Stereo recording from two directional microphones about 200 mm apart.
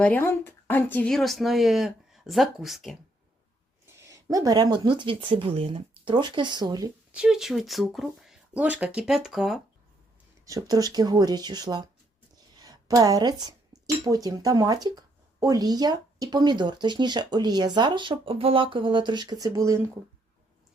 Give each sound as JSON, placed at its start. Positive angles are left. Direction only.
{"t": 0.0, "sound": "speech", "side_deg": 10}
{"t": 3.9, "sound": "speech", "side_deg": -15}
{"t": 7.1, "sound": "speech", "side_deg": -5}
{"t": 10.4, "sound": "speech", "side_deg": -20}